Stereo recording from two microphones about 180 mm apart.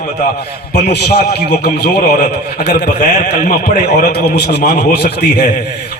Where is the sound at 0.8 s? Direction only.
60° left (ahead or behind).